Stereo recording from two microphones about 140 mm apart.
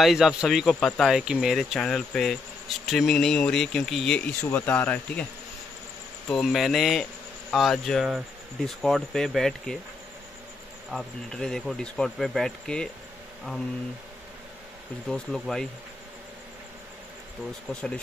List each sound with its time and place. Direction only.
0.0 s speech: centre (ahead or behind)
6.2 s speech: centre (ahead or behind)
10.9 s speech: 5° left (ahead or behind)
15.0 s speech: 5° left (ahead or behind)
17.7 s speech: 5° left (ahead or behind)